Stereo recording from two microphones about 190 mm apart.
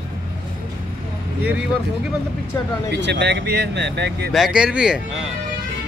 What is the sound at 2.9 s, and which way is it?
Speech, 70° right (ahead or behind).